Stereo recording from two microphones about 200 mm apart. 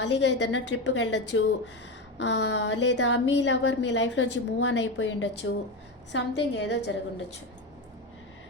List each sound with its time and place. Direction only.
0.0 s a woman's voice: 60° left (ahead or behind)